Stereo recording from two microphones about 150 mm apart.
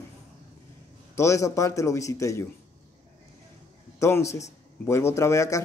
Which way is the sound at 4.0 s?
20° left (ahead or behind).